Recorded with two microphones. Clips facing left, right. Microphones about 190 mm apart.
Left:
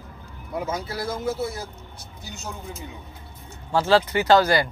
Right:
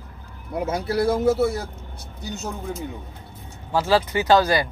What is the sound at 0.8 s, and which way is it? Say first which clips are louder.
Speech: right 8 dB; 65° right (ahead or behind).